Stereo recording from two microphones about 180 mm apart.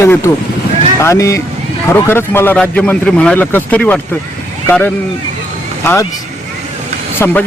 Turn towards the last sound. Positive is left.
turn(degrees=10)  # may be behind; listen again after turning